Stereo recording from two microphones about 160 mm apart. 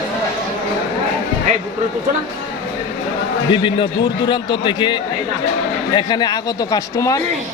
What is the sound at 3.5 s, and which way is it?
A man's voice, 30° left (ahead or behind).